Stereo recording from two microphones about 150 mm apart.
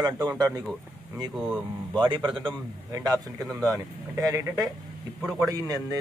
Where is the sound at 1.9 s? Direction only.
30° right (ahead or behind).